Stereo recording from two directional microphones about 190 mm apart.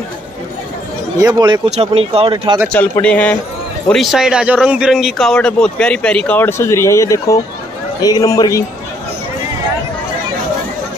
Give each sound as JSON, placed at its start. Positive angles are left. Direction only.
{"t": 1.1, "sound": "speech", "side_deg": -20}
{"t": 2.7, "sound": "a man's voice", "side_deg": 5}